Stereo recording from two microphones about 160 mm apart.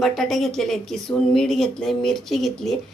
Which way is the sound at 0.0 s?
Centre (ahead or behind).